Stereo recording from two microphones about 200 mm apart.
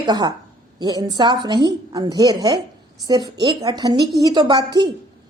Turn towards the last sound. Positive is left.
turn(degrees=-20)  # may be behind; listen again after turning